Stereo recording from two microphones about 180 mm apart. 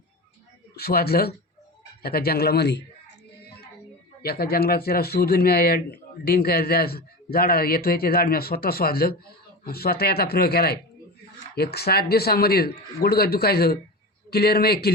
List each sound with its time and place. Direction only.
0.8 s speech: 60° left (ahead or behind)
4.2 s speech: 60° left (ahead or behind)